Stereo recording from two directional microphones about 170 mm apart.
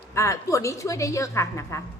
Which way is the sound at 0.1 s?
15° left (ahead or behind).